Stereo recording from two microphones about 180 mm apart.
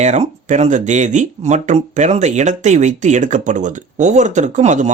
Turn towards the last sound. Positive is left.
turn(degrees=-40)  # may be behind; listen again after turning